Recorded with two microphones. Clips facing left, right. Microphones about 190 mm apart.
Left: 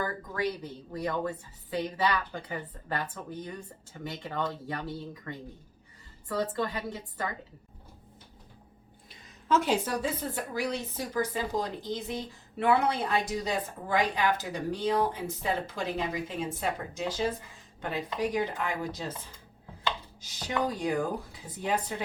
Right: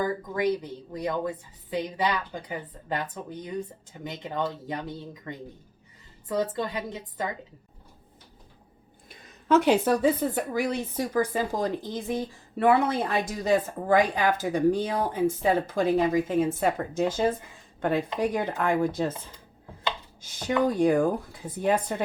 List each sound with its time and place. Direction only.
0.0 s a woman's voice: 15° right (ahead or behind)
9.0 s speech: 65° right (ahead or behind)
20.2 s speech: 55° right (ahead or behind)